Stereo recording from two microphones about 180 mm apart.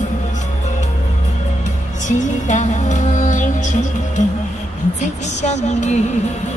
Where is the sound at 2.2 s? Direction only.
45° left (ahead or behind).